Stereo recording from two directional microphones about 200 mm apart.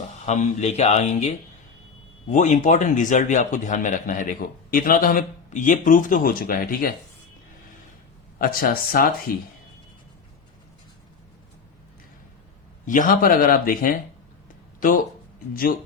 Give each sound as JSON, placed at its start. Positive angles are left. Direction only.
{"t": 0.3, "sound": "a man's voice", "side_deg": 35}
{"t": 8.4, "sound": "speech", "side_deg": 45}
{"t": 12.8, "sound": "speech", "side_deg": 40}